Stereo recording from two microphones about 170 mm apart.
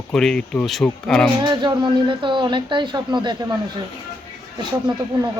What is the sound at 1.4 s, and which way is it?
Speech, 25° right (ahead or behind).